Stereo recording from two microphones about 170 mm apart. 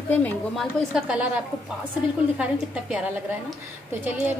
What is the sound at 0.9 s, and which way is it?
Speech, 5° right (ahead or behind).